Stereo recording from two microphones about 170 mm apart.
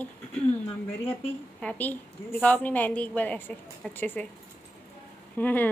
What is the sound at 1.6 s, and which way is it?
A child's voice, 10° left (ahead or behind).